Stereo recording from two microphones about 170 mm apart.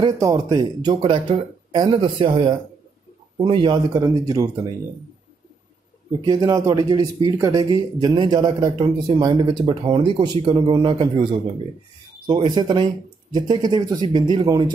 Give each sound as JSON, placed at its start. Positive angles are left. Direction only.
{"t": 0.0, "sound": "speech", "side_deg": -20}
{"t": 6.2, "sound": "speech", "side_deg": -20}
{"t": 12.3, "sound": "speech", "side_deg": -25}